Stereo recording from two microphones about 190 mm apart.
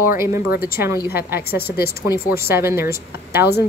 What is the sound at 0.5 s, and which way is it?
Speech, 50° left (ahead or behind).